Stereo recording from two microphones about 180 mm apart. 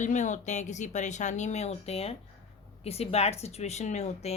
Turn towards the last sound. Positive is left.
turn(degrees=40)  # may be behind; listen again after turning